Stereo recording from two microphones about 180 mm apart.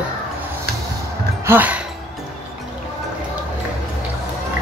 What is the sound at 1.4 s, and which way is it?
Music, 10° right (ahead or behind).